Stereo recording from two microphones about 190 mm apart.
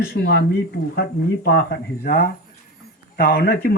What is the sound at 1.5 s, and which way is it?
Speech, 55° left (ahead or behind).